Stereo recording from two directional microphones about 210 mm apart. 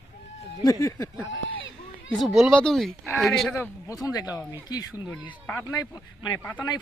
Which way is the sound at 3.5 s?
10° left (ahead or behind).